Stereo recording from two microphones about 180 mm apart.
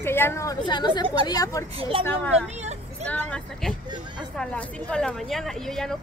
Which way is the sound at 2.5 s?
40° right (ahead or behind).